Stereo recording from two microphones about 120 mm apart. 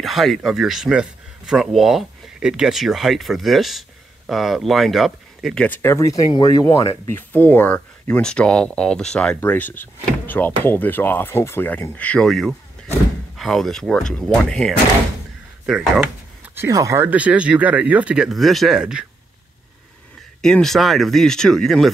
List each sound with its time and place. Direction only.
0.0 s speech: centre (ahead or behind)
5.8 s speech: 25° left (ahead or behind)
7.2 s speech: 15° left (ahead or behind); by 16.1 s 5° right (ahead or behind)
16.5 s speech: 25° right (ahead or behind)
17.1 s speech: 10° right (ahead or behind)
20.4 s speech: 5° left (ahead or behind)